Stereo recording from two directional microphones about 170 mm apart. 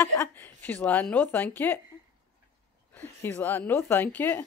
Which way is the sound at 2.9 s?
10° left (ahead or behind).